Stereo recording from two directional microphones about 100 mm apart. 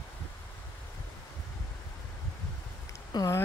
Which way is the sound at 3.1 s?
40° left (ahead or behind).